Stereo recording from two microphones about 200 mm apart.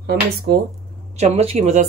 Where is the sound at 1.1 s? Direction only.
35° right (ahead or behind).